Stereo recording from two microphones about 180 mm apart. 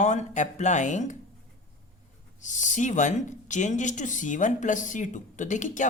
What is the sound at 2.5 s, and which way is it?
Speech, 45° left (ahead or behind).